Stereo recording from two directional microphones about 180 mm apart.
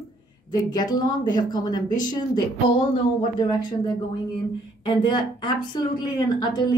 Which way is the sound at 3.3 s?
25° left (ahead or behind).